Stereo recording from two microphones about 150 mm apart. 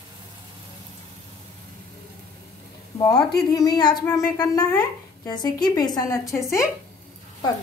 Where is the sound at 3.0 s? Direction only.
25° left (ahead or behind).